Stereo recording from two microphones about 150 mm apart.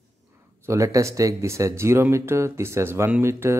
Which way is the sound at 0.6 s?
20° right (ahead or behind).